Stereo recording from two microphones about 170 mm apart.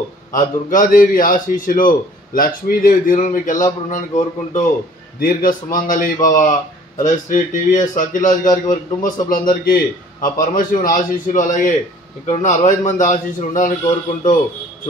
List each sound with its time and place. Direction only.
0.3 s a man's voice: 50° left (ahead or behind)